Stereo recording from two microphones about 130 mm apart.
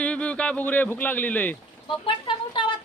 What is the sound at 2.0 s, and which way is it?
Speech, 40° left (ahead or behind).